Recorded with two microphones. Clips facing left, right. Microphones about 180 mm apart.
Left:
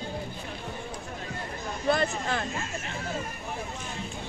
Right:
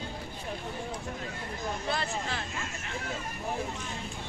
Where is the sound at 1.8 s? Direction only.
50° left (ahead or behind).